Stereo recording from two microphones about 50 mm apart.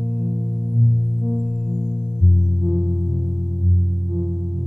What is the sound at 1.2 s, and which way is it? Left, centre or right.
Music, centre.